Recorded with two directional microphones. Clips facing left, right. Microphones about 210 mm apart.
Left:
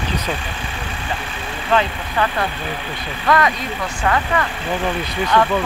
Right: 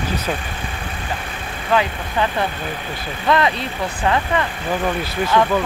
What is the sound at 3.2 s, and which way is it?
Speech, 25° right (ahead or behind).